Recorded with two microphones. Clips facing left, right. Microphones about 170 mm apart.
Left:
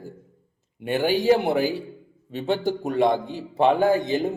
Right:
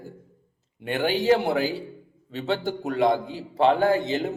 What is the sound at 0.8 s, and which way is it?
Speech, 10° left (ahead or behind).